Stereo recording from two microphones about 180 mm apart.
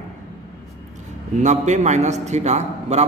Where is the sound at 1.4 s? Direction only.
40° right (ahead or behind).